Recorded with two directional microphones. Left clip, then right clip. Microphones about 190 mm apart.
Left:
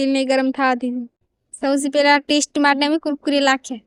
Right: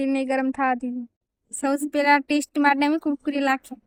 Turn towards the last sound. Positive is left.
turn(degrees=50)  # may be behind; listen again after turning